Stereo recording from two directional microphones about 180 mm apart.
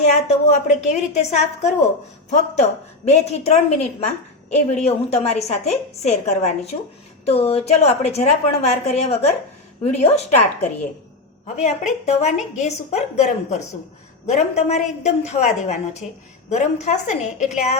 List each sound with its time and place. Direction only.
0.1 s a woman's voice: 40° left (ahead or behind)
3.1 s a woman's voice: 35° left (ahead or behind)